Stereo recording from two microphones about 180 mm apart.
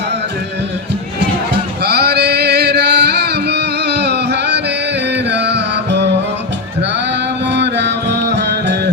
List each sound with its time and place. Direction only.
1.8 s music: 65° right (ahead or behind)
7.5 s music: 75° right (ahead or behind)